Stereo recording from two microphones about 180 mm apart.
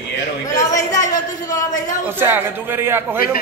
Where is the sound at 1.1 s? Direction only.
20° left (ahead or behind).